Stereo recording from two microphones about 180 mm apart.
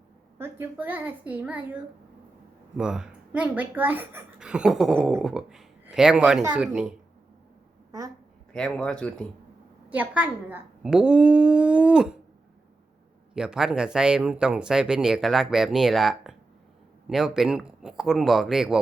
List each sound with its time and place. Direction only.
0.3 s speech: 10° right (ahead or behind)
2.7 s speech: 5° right (ahead or behind)
8.5 s speech: 5° left (ahead or behind)
9.9 s speech: 10° right (ahead or behind)
13.3 s speech: 5° right (ahead or behind)